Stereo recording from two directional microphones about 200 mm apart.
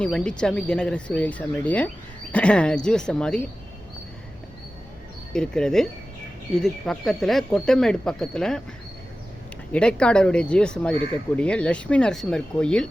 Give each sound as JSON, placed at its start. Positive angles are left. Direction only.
{"t": 0.0, "sound": "speech", "side_deg": 5}
{"t": 5.3, "sound": "speech", "side_deg": 5}
{"t": 9.7, "sound": "speech", "side_deg": 5}